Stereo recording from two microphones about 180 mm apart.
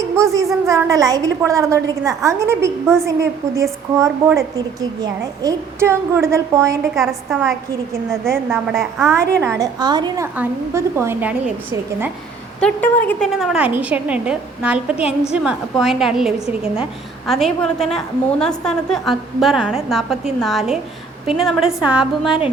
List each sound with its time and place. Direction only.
0.2 s a woman's voice: 15° right (ahead or behind)
6.9 s a woman's voice: centre (ahead or behind)
8.2 s a woman's voice: 15° right (ahead or behind)
8.7 s a woman's voice: centre (ahead or behind)
9.4 s a woman's voice: 15° right (ahead or behind)
10.3 s a woman's voice: 10° right (ahead or behind)
12.5 s a woman's voice: 10° left (ahead or behind)